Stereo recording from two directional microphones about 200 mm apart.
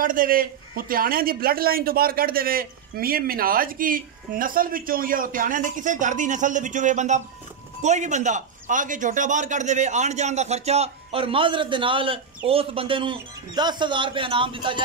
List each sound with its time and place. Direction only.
0.0 s a man's voice: 45° right (ahead or behind); by 14.8 s 25° right (ahead or behind)